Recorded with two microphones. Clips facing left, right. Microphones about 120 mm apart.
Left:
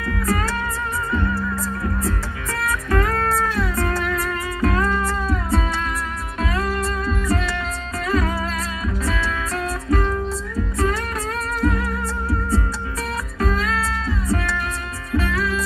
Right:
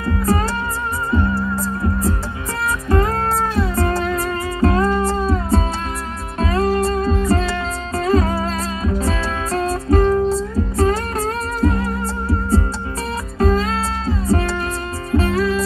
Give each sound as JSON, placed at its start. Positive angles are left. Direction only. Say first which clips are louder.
{"t": 0.0, "sound": "music", "louder": "right 4 dB", "side_deg": -30}